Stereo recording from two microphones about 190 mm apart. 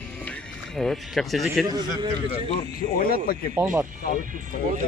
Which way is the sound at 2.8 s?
50° left (ahead or behind).